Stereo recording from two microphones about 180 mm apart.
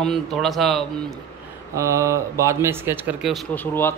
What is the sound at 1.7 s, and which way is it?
Speech, 15° right (ahead or behind).